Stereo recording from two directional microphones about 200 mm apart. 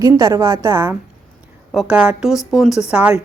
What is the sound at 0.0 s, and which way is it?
A woman's voice, 15° right (ahead or behind).